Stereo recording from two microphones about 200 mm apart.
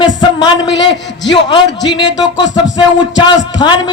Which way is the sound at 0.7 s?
65° left (ahead or behind).